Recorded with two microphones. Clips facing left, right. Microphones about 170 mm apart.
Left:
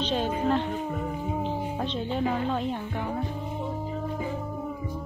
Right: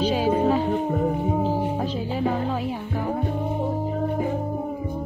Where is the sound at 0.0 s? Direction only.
10° right (ahead or behind).